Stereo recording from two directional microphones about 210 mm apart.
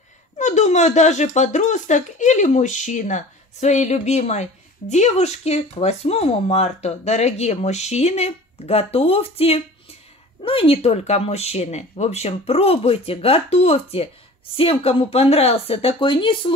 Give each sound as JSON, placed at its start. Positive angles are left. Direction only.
{"t": 0.4, "sound": "speech", "side_deg": 35}